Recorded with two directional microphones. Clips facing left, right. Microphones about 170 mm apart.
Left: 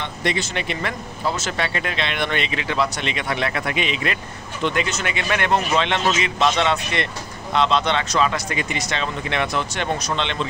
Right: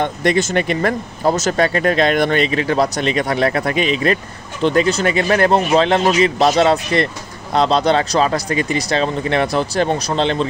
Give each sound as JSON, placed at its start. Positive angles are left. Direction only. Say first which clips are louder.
{"t": 0.0, "sound": "speech", "louder": "right 8 dB", "side_deg": -50}